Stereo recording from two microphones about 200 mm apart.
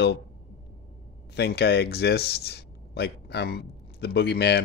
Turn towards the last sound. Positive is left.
turn(degrees=55)  # may be behind; listen again after turning